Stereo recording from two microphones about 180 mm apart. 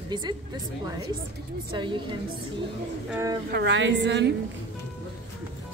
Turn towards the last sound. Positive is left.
turn(degrees=-75)  # may be behind; listen again after turning